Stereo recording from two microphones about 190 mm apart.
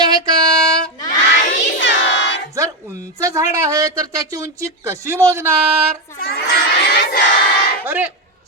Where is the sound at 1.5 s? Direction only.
70° left (ahead or behind).